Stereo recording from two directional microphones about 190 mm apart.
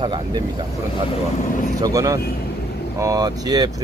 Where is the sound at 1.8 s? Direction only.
20° right (ahead or behind).